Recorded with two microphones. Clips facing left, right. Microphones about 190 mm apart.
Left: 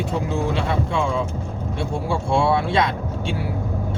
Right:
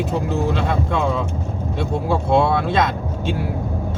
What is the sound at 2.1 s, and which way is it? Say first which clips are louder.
Speech: right 3 dB; 60° right (ahead or behind).